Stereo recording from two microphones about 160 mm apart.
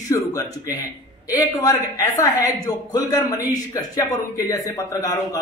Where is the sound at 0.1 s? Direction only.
20° left (ahead or behind).